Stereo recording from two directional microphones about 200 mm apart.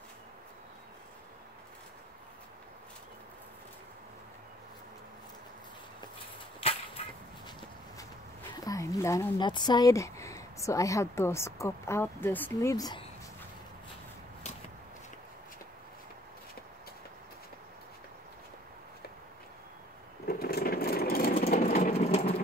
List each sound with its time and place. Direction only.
8.5 s speech: 15° left (ahead or behind)
20.2 s vehicle: 50° left (ahead or behind)
21.5 s vehicle: 40° left (ahead or behind)